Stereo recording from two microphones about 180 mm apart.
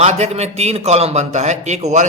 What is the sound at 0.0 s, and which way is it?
A man's voice, 35° right (ahead or behind).